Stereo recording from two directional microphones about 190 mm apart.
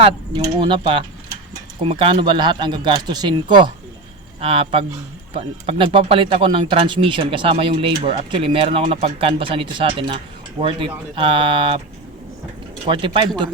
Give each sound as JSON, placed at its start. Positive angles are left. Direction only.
{"t": 0.0, "sound": "speech", "side_deg": -25}
{"t": 12.9, "sound": "speech", "side_deg": -25}